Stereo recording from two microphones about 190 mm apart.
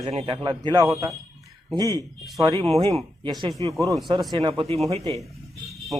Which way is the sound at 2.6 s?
30° right (ahead or behind).